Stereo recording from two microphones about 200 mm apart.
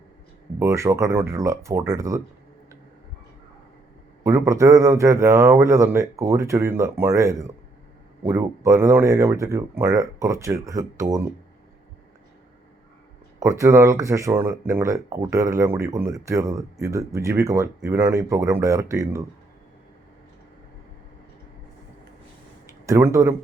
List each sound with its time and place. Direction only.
0.6 s speech: 15° right (ahead or behind)
4.2 s speech: 15° right (ahead or behind)
13.4 s speech: 15° right (ahead or behind)
22.9 s speech: 15° right (ahead or behind)